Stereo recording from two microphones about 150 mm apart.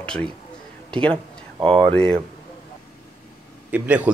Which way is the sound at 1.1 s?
35° right (ahead or behind).